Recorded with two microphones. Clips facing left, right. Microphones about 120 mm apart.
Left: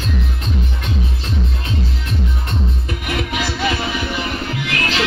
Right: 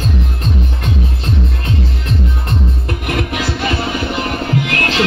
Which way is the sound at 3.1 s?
50° right (ahead or behind).